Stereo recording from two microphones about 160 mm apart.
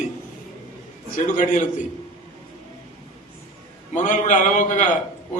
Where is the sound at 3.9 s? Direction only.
50° left (ahead or behind).